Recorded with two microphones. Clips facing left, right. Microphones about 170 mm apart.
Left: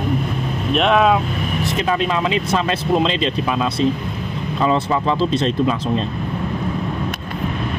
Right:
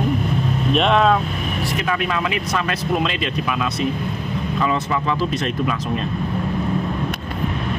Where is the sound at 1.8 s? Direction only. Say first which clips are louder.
Left 4 dB; 25° left (ahead or behind).